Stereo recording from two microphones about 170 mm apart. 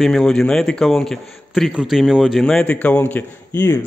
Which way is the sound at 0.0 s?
5° left (ahead or behind).